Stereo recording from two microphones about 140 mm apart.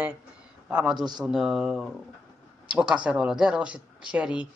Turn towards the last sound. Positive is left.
turn(degrees=-10)  # may be behind; listen again after turning